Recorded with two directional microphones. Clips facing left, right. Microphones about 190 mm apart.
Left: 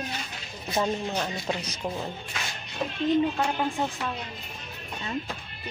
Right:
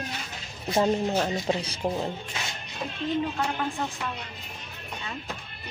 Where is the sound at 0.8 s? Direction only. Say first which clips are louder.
Right 4 dB; 25° right (ahead or behind).